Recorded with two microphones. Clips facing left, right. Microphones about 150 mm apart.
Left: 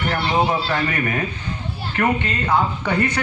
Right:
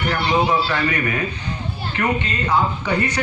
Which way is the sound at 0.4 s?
45° left (ahead or behind).